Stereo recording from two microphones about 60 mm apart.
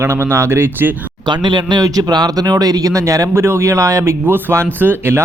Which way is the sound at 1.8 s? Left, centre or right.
Right.